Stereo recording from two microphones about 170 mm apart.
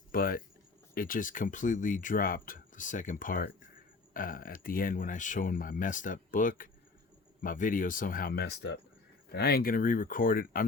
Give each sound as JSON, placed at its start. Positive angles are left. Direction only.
{"t": 0.1, "sound": "speech", "side_deg": 60}
{"t": 9.3, "sound": "speech", "side_deg": 70}